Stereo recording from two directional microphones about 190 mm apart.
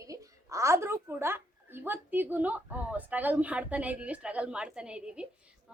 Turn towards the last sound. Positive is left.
turn(degrees=-5)  # may be behind; listen again after turning